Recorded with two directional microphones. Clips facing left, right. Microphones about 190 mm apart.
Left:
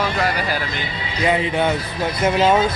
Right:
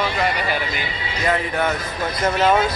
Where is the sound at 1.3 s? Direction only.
15° left (ahead or behind).